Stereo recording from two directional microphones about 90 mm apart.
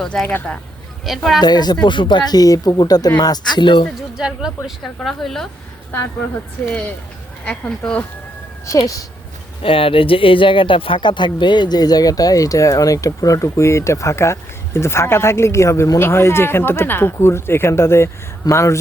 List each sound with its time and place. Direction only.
0.0 s a woman's voice: 10° left (ahead or behind)
1.4 s speech: 50° left (ahead or behind)
4.2 s a woman's voice: 5° right (ahead or behind)
7.4 s speech: 15° left (ahead or behind)
9.6 s speech: 85° left; by 18.8 s 35° left (ahead or behind)